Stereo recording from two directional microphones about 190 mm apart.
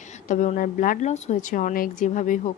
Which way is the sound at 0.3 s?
40° left (ahead or behind).